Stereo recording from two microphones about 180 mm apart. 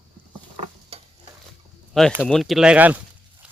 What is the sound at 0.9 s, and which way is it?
Stir, 35° right (ahead or behind).